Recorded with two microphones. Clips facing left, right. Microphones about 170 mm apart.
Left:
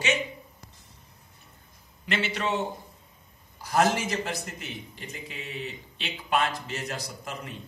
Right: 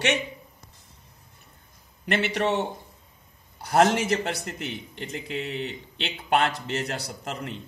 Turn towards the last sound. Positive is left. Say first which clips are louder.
# right 4 dB
turn(degrees=-65)  # may be behind; listen again after turning